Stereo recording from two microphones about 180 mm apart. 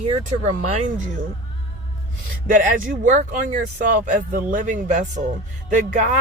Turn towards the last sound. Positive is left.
turn(degrees=-45)  # may be behind; listen again after turning